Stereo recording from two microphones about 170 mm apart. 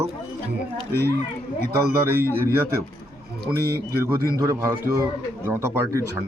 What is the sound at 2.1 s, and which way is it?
Speech, 15° right (ahead or behind).